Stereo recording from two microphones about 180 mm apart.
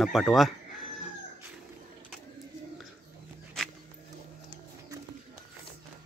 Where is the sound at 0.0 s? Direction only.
Centre (ahead or behind).